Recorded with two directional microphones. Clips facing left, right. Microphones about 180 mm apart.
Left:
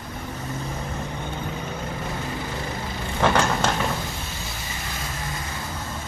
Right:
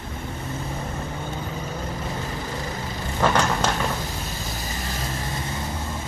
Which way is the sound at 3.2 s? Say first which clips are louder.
Even; 5° right (ahead or behind).